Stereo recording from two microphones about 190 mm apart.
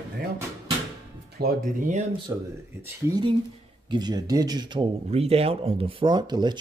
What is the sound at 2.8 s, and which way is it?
Speech, 20° right (ahead or behind).